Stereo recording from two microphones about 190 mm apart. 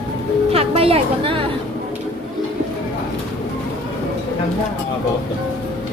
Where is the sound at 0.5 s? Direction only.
30° right (ahead or behind).